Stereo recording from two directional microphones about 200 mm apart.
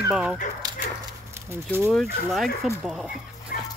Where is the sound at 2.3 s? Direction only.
Centre (ahead or behind).